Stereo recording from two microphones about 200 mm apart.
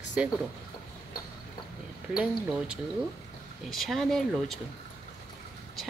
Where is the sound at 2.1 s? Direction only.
5° right (ahead or behind).